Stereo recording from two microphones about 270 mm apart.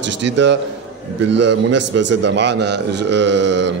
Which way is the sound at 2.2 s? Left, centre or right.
Right.